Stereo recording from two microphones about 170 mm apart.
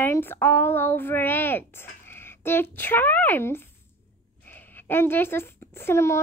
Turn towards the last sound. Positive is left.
turn(degrees=15)  # may be behind; listen again after turning